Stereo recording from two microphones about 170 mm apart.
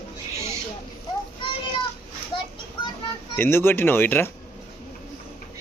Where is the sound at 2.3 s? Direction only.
30° left (ahead or behind).